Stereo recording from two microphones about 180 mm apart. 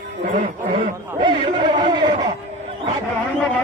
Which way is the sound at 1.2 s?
25° right (ahead or behind).